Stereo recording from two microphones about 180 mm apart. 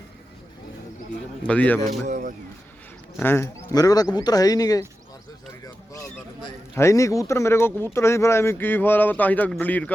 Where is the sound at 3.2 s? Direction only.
15° left (ahead or behind).